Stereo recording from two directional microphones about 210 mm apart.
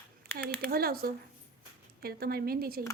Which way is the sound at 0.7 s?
45° right (ahead or behind).